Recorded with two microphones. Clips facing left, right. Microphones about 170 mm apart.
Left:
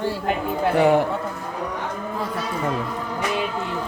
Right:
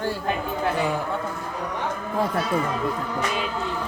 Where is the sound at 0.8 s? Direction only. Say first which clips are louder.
Left 13 dB; 65° left (ahead or behind).